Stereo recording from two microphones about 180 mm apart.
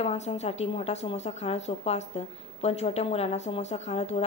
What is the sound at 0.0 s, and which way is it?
A woman's voice, 35° left (ahead or behind).